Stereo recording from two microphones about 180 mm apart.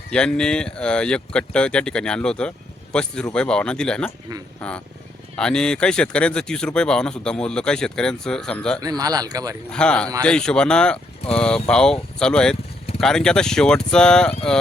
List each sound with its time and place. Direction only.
0.1 s speech: 5° left (ahead or behind)
8.8 s speech: 20° right (ahead or behind)
9.7 s speech: 5° left (ahead or behind)